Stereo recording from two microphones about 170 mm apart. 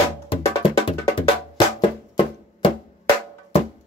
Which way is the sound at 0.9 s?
30° left (ahead or behind).